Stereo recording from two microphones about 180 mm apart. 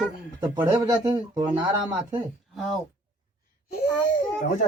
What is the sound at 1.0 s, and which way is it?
Speech, 25° right (ahead or behind).